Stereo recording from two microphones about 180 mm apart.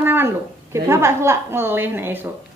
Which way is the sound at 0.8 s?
15° right (ahead or behind).